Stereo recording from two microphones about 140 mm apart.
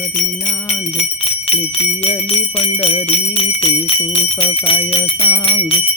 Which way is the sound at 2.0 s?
45° left (ahead or behind).